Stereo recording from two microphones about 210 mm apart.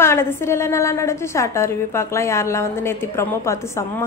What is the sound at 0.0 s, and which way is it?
Speech, 10° left (ahead or behind).